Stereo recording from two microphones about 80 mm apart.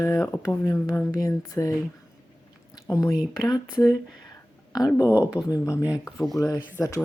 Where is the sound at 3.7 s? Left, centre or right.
Centre.